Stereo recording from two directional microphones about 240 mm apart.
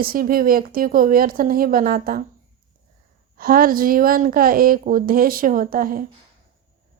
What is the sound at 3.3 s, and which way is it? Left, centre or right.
Speech, right.